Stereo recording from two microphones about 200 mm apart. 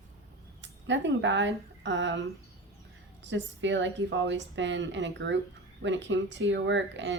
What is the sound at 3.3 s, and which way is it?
A woman's voice, 65° right (ahead or behind).